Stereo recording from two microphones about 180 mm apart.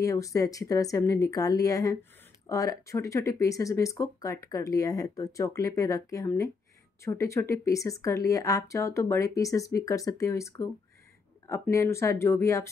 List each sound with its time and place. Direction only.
0.0 s a woman's voice: 20° left (ahead or behind)